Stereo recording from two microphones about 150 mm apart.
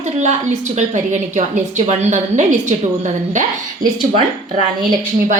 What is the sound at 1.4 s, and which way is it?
A woman's voice, 50° right (ahead or behind).